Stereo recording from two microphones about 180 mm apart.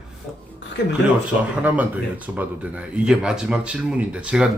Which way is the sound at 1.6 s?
10° right (ahead or behind).